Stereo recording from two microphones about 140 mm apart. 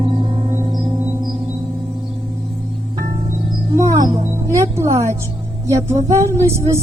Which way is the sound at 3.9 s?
30° right (ahead or behind).